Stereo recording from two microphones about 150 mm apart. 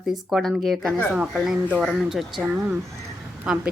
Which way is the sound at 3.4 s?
5° right (ahead or behind).